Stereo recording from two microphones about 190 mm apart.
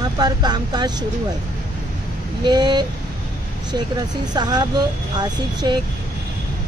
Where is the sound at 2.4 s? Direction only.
20° right (ahead or behind).